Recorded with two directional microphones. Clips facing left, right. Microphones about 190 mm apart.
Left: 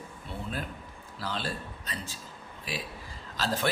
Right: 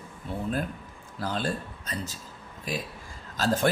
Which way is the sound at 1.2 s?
45° right (ahead or behind).